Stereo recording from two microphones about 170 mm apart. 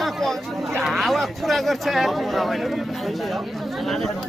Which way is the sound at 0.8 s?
Centre (ahead or behind).